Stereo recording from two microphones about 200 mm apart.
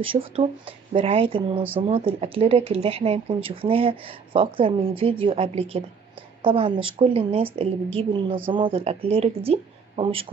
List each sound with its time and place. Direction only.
0.0 s speech: 25° right (ahead or behind)